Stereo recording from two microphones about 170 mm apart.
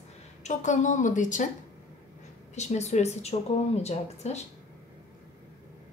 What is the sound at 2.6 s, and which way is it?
A woman's voice, 40° left (ahead or behind).